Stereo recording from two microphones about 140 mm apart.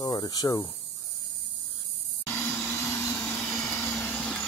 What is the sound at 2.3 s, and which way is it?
Vehicle, 20° left (ahead or behind).